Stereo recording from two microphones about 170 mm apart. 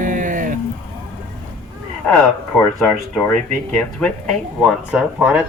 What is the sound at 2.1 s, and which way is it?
Speech, 5° left (ahead or behind).